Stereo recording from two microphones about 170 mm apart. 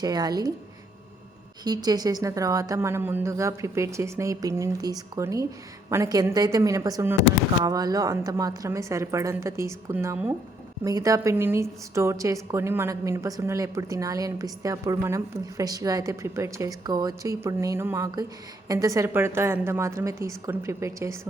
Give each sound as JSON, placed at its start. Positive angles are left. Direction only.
{"t": 0.0, "sound": "a woman's voice", "side_deg": -20}
{"t": 1.6, "sound": "a woman's voice", "side_deg": -20}